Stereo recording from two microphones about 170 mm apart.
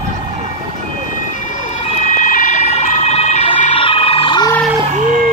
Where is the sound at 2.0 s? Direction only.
50° left (ahead or behind).